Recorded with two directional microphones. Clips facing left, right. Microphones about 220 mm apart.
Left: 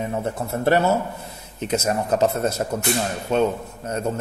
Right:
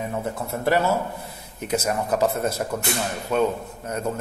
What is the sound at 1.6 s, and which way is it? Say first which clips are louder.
A man's voice: left 2 dB; 25° left (ahead or behind).